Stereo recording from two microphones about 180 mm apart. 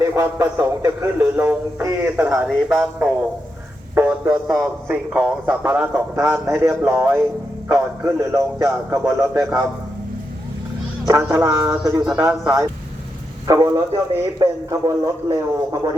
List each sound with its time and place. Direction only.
0.0 s a man's voice: 15° right (ahead or behind)
11.0 s a man's voice: 15° right (ahead or behind)
12.3 s a man's voice: 10° right (ahead or behind)
13.5 s a man's voice: 20° right (ahead or behind)